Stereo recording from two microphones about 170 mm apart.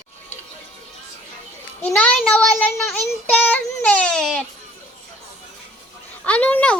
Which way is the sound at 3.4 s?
10° left (ahead or behind).